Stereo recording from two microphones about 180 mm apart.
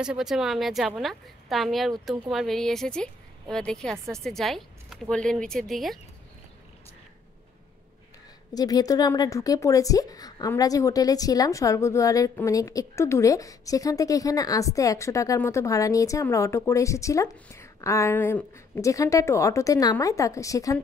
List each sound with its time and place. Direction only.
0.0 s a woman's voice: 5° right (ahead or behind)
8.5 s a woman's voice: 20° left (ahead or behind)